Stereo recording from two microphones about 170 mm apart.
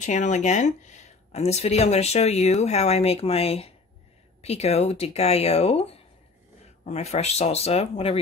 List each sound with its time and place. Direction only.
0.0 s speech: 45° left (ahead or behind)